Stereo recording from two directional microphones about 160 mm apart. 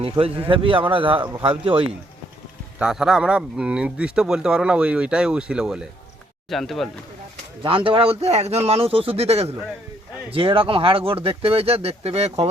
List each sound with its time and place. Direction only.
0.0 s speech: 35° right (ahead or behind)
2.7 s a man's voice: 5° right (ahead or behind)
7.6 s speech: 30° right (ahead or behind)